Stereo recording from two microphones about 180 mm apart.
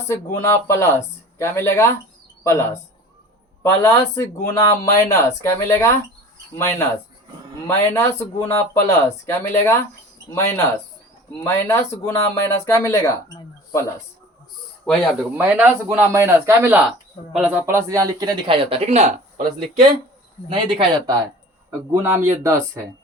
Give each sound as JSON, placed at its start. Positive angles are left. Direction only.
{"t": 0.1, "sound": "speech", "side_deg": 15}
{"t": 11.4, "sound": "speech", "side_deg": 15}
{"t": 14.8, "sound": "speech", "side_deg": 0}
{"t": 15.4, "sound": "speech", "side_deg": -10}
{"t": 20.5, "sound": "speech", "side_deg": -30}
{"t": 21.9, "sound": "speech", "side_deg": -10}